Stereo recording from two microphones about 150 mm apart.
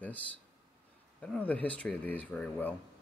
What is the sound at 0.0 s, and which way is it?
Speech, 10° left (ahead or behind).